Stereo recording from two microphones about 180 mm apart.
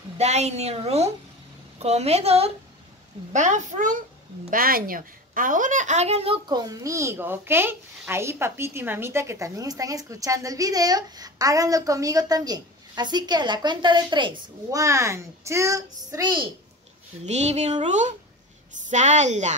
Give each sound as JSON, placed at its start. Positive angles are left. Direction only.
{"t": 0.2, "sound": "a woman's voice", "side_deg": -35}
{"t": 17.2, "sound": "a woman's voice", "side_deg": -40}